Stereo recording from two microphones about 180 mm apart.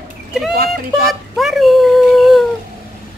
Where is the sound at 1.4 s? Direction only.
Centre (ahead or behind).